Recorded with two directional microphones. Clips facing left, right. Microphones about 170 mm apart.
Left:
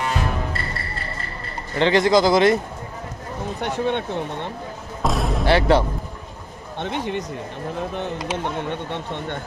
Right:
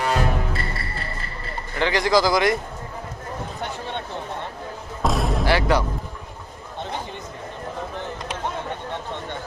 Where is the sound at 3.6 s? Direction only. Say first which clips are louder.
Left 10 dB; 60° left (ahead or behind).